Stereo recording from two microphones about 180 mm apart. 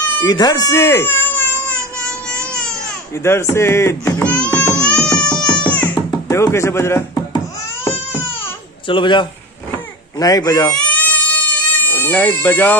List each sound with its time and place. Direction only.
0.0 s baby cry: 20° left (ahead or behind); by 2.7 s 5° left (ahead or behind)
3.2 s speech: 15° left (ahead or behind)
4.3 s music: 10° left (ahead or behind)
5.2 s music: 25° left (ahead or behind)
6.0 s speech: 20° left (ahead or behind)
8.8 s speech: 25° left (ahead or behind)
10.7 s goat: 5° left (ahead or behind)